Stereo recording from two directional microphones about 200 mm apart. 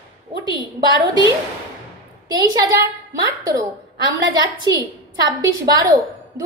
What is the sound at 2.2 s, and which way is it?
A woman's voice, 15° right (ahead or behind).